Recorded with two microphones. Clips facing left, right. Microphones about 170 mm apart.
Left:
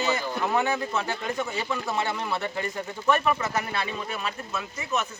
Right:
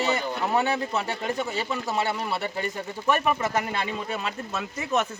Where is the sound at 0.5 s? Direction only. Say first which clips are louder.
Right 2 dB; 35° right (ahead or behind).